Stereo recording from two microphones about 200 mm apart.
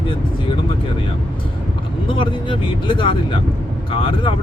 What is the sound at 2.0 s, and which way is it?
Speech, 25° left (ahead or behind).